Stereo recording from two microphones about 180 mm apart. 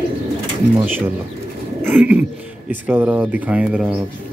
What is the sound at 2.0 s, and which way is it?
Speech, 10° right (ahead or behind).